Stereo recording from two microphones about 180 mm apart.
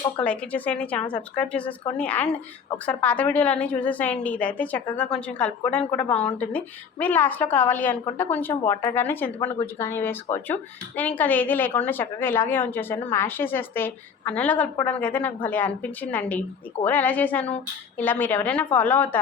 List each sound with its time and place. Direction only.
0.2 s a woman's voice: 10° left (ahead or behind)